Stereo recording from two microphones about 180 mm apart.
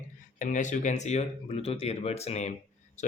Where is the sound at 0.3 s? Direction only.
45° left (ahead or behind).